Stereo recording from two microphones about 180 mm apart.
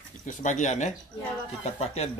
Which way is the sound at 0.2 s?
45° left (ahead or behind).